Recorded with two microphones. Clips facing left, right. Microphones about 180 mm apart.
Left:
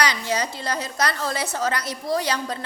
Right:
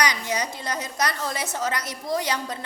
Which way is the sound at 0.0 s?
15° right (ahead or behind).